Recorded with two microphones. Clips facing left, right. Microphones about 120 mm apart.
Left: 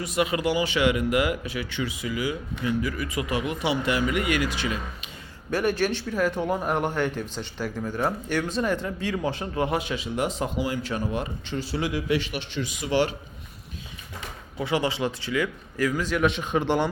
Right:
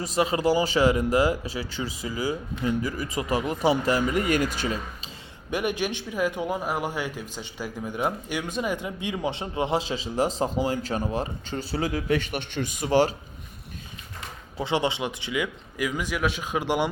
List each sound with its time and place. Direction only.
0.0 s speech: 35° right (ahead or behind)
5.5 s a man's voice: 15° right (ahead or behind); by 13.1 s 40° right (ahead or behind)
14.6 s speech: 25° right (ahead or behind)